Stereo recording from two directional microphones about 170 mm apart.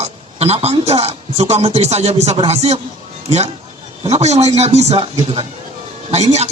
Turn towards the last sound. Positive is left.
turn(degrees=-40)  # may be behind; listen again after turning